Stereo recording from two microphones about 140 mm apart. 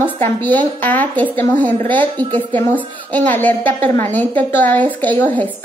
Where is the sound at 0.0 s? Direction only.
15° left (ahead or behind).